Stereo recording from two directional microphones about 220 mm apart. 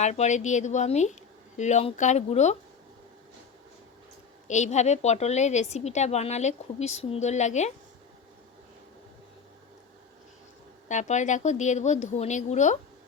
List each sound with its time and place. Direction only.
0.0 s a woman's voice: 30° left (ahead or behind)
4.4 s a woman's voice: 30° left (ahead or behind)
10.8 s a woman's voice: 35° left (ahead or behind)